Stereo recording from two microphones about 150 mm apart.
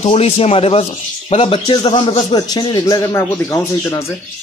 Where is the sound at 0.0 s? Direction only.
40° left (ahead or behind).